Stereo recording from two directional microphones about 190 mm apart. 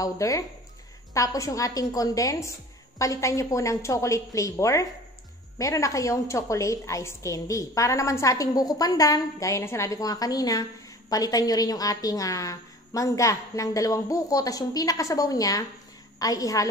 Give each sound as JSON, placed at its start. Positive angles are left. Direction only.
{"t": 0.0, "sound": "a woman's voice", "side_deg": 20}